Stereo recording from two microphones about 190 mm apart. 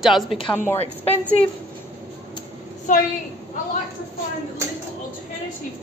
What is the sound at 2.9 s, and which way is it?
Speech, 45° left (ahead or behind).